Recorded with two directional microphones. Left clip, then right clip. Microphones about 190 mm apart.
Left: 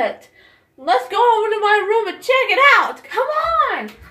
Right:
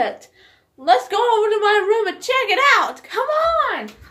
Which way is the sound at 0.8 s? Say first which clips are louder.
Even; 5° right (ahead or behind).